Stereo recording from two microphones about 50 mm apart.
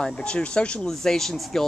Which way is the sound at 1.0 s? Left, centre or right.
Centre.